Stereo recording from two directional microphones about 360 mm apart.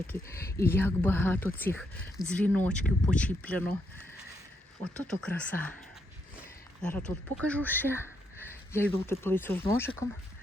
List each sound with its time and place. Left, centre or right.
0.1 s speech: centre
6.8 s speech: centre